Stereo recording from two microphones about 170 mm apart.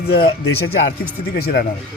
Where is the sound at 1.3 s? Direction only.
60° left (ahead or behind).